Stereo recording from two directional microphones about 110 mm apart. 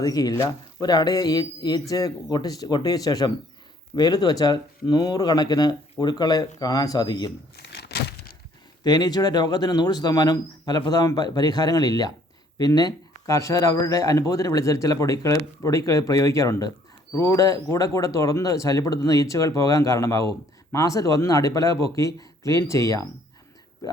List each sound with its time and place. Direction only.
0.0 s speech: 35° left (ahead or behind)
8.8 s speech: 40° left (ahead or behind)